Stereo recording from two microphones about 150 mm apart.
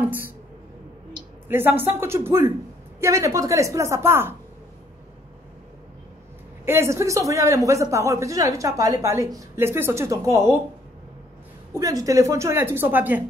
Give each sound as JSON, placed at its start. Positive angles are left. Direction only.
{"t": 0.0, "sound": "a sound", "side_deg": -15}
{"t": 1.5, "sound": "a woman's voice", "side_deg": -15}
{"t": 6.6, "sound": "a man's voice", "side_deg": -15}
{"t": 11.7, "sound": "a woman's voice", "side_deg": -20}